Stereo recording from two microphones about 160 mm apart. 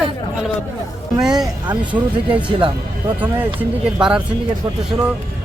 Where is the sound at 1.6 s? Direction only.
30° right (ahead or behind).